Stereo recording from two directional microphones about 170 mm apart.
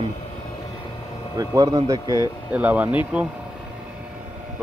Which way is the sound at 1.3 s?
20° right (ahead or behind).